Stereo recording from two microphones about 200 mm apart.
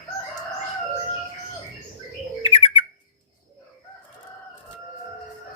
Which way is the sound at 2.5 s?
25° left (ahead or behind).